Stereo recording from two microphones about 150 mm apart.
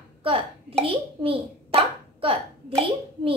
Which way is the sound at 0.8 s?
40° right (ahead or behind).